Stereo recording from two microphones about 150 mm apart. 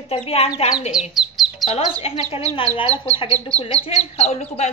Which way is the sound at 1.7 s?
45° left (ahead or behind).